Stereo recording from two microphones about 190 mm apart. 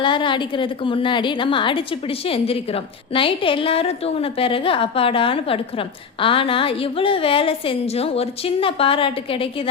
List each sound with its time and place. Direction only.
0.0 s a woman's voice: 25° left (ahead or behind)